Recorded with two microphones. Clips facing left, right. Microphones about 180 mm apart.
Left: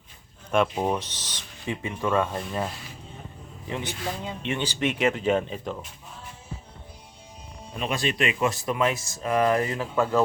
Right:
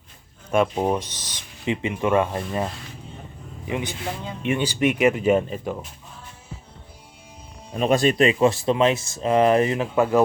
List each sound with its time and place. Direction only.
0.5 s speech: 10° right (ahead or behind)
7.8 s speech: 45° right (ahead or behind); by 10.2 s 20° right (ahead or behind)